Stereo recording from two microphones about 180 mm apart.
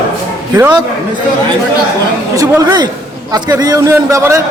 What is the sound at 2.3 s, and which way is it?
A man's voice, 20° right (ahead or behind).